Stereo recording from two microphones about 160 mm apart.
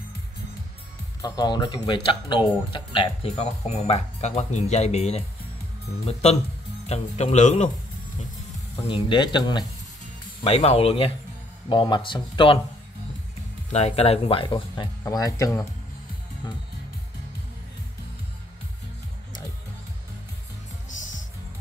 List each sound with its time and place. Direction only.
1.2 s speech: 25° left (ahead or behind); by 5.2 s 40° left (ahead or behind)
6.9 s speech: 45° left (ahead or behind)
8.8 s speech: 30° left (ahead or behind)
10.4 s speech: 40° left (ahead or behind)
13.7 s speech: 40° left (ahead or behind); by 15.6 s 20° left (ahead or behind)